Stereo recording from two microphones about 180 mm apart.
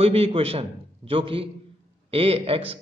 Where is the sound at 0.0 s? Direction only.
30° right (ahead or behind).